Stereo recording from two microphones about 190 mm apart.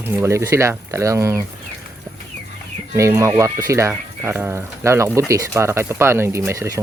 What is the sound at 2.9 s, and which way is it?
Speech, 15° right (ahead or behind).